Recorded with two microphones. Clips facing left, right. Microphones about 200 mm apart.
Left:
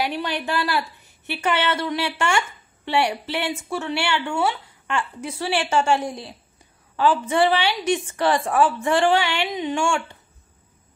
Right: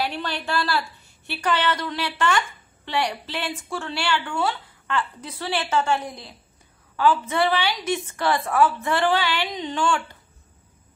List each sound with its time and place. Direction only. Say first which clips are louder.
0.0 s a woman's voice: left 3 dB; 15° left (ahead or behind)
2.2 s a sound: right 4 dB; 25° left (ahead or behind)
2.9 s a woman's voice: left 4 dB; 10° left (ahead or behind)
3.4 s speech: left 4 dB; 25° left (ahead or behind)
4.5 s a sound: left 2 dB; 20° left (ahead or behind)
5.4 s a woman's voice: left 2 dB; 15° left (ahead or behind)